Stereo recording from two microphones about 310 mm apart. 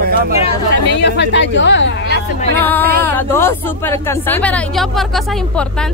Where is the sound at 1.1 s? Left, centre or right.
Left.